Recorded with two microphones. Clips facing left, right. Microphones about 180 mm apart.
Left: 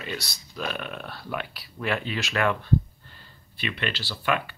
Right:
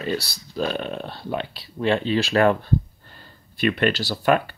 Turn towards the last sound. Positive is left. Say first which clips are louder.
# right 7 dB
turn(degrees=-40)  # may be behind; listen again after turning